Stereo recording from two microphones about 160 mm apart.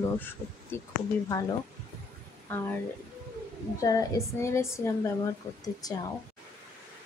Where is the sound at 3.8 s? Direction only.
25° left (ahead or behind).